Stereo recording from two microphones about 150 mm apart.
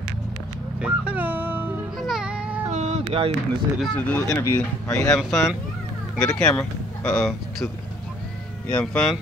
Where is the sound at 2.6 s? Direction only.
45° right (ahead or behind).